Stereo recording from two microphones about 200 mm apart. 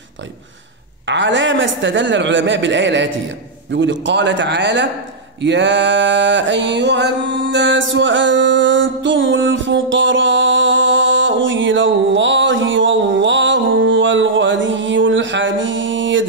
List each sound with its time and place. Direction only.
1.0 s a man's voice: 65° right (ahead or behind)
5.4 s music: 65° right (ahead or behind)